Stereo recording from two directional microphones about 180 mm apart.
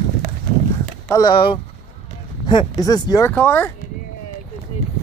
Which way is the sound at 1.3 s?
30° left (ahead or behind).